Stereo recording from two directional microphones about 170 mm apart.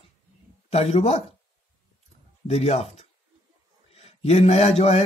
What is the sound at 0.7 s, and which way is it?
Speech, 40° left (ahead or behind).